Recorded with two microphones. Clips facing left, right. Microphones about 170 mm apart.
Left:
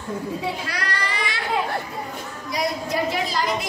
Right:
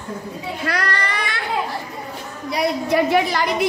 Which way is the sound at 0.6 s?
60° right (ahead or behind).